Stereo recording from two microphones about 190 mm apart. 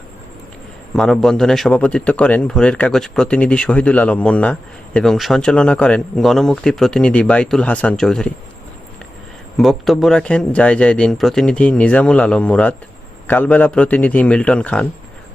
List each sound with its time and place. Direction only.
0.9 s a man's voice: 5° left (ahead or behind)
9.6 s a man's voice: centre (ahead or behind)